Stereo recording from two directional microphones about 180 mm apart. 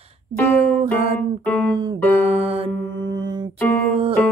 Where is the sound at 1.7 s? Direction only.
30° right (ahead or behind).